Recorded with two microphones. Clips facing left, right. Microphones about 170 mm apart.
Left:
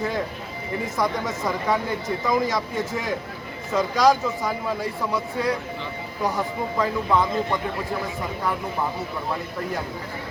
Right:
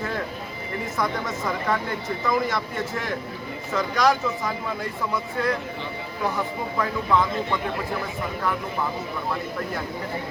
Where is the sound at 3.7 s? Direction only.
15° left (ahead or behind).